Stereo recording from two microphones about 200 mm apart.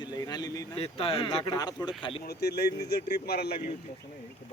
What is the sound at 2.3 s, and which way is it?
Speech, 55° left (ahead or behind).